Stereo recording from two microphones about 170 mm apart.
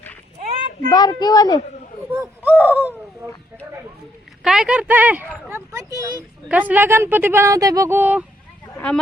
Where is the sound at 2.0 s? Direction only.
10° right (ahead or behind).